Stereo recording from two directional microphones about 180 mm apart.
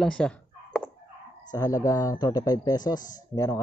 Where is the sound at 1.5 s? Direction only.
20° left (ahead or behind).